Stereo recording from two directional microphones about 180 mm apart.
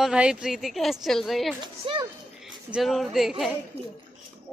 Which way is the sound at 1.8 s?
30° right (ahead or behind).